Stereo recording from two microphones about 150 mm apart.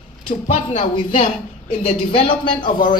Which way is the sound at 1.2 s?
50° left (ahead or behind).